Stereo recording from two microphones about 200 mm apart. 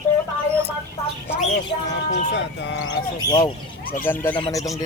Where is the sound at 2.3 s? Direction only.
60° left (ahead or behind).